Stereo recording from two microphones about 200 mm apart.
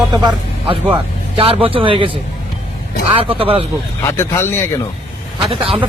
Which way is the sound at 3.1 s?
25° right (ahead or behind).